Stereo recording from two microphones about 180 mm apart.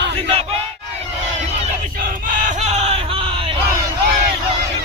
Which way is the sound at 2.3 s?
45° right (ahead or behind).